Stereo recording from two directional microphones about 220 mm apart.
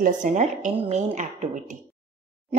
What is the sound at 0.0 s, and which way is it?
A woman's voice, 35° right (ahead or behind).